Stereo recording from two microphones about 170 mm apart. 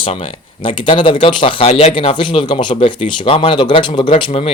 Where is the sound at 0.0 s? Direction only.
30° left (ahead or behind).